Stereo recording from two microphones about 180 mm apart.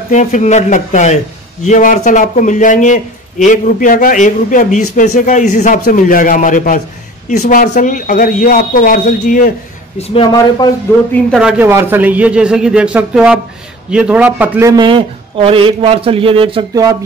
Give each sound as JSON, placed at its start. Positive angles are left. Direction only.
{"t": 0.1, "sound": "a man's voice", "side_deg": 40}
{"t": 9.9, "sound": "speech", "side_deg": 35}
{"t": 10.9, "sound": "speech", "side_deg": 10}
{"t": 11.3, "sound": "a man's voice", "side_deg": -5}